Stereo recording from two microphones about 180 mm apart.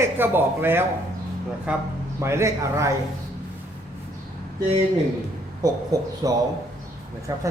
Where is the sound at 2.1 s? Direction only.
15° right (ahead or behind).